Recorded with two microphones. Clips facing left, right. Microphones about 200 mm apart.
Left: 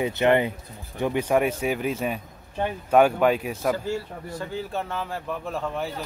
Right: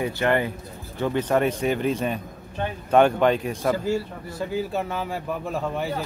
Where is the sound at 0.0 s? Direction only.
20° left (ahead or behind).